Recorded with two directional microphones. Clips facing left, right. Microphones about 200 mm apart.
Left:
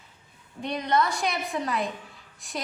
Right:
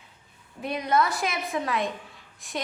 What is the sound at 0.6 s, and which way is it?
A woman's voice, 5° right (ahead or behind).